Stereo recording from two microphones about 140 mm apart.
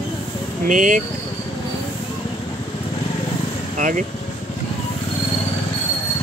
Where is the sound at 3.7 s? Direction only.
65° right (ahead or behind).